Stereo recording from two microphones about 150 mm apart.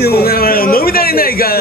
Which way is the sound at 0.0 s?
90° left.